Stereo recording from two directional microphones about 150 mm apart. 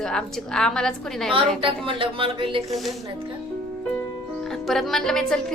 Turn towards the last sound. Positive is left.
turn(degrees=5)  # may be behind; listen again after turning